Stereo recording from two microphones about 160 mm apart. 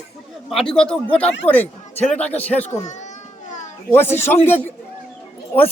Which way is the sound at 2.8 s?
45° left (ahead or behind).